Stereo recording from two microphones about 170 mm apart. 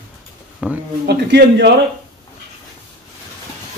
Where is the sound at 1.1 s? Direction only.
80° right.